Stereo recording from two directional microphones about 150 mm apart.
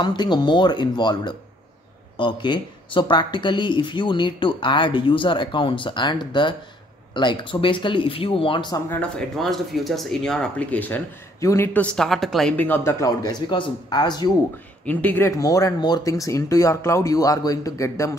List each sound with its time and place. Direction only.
0.0 s speech: 30° left (ahead or behind)
9.4 s speech: centre (ahead or behind); by 14.3 s 30° left (ahead or behind)
14.9 s speech: 10° left (ahead or behind)